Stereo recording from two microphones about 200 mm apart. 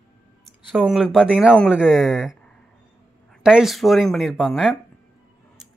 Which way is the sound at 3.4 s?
Centre (ahead or behind).